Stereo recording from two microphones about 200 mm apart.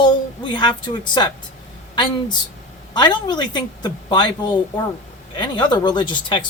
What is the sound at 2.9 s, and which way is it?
Speech, 20° left (ahead or behind).